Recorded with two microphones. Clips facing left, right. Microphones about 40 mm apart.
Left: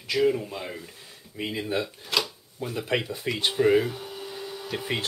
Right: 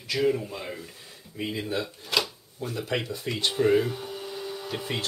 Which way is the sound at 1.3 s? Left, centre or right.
Centre.